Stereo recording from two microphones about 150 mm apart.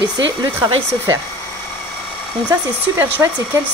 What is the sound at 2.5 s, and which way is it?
Speech, 20° right (ahead or behind).